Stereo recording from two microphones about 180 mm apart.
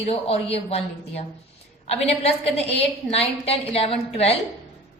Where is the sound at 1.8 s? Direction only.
35° left (ahead or behind).